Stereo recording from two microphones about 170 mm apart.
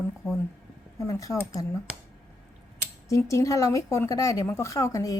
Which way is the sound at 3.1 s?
20° left (ahead or behind).